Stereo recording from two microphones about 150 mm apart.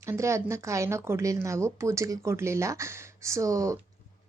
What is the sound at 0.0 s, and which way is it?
A woman's voice, 20° right (ahead or behind).